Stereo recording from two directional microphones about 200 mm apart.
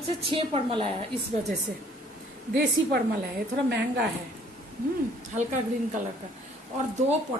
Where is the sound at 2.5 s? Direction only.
55° right (ahead or behind).